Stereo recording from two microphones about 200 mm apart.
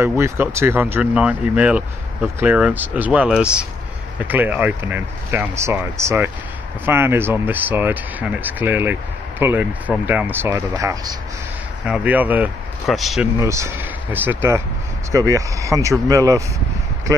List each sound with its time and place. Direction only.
0.0 s speech: 15° right (ahead or behind)
11.8 s speech: 5° right (ahead or behind)
13.4 s speech: 15° right (ahead or behind)